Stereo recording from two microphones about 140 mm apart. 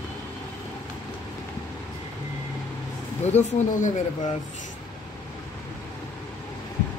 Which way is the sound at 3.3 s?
55° left (ahead or behind).